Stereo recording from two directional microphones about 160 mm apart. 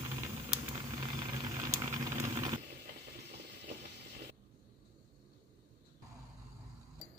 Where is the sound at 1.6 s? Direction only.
20° right (ahead or behind).